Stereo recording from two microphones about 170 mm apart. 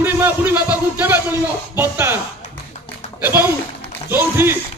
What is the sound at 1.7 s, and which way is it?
Speech, 10° right (ahead or behind).